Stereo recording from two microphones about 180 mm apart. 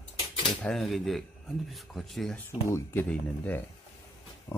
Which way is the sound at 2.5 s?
15° left (ahead or behind).